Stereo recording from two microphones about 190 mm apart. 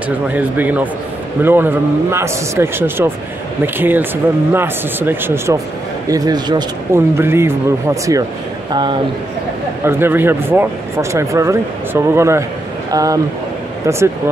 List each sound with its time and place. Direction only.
0.3 s speech: 10° right (ahead or behind)
9.8 s speech: 10° right (ahead or behind)